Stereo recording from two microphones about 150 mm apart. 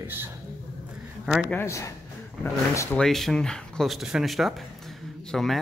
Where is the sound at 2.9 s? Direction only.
5° left (ahead or behind).